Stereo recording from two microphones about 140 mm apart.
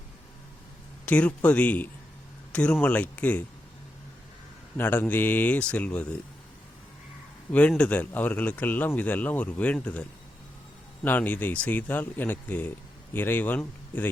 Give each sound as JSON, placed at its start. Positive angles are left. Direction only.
{"t": 1.0, "sound": "speech", "side_deg": 10}
{"t": 4.8, "sound": "speech", "side_deg": 15}
{"t": 7.7, "sound": "speech", "side_deg": 10}